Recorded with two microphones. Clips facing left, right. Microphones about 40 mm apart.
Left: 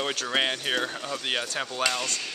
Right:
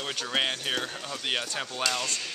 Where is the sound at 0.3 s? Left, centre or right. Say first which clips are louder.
Left 1 dB; centre.